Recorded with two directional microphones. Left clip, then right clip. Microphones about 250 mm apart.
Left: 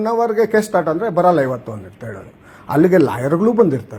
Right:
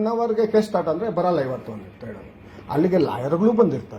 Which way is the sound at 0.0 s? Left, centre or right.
Left.